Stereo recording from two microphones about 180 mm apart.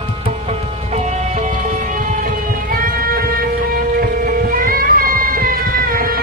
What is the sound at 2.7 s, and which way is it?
Music, 55° right (ahead or behind).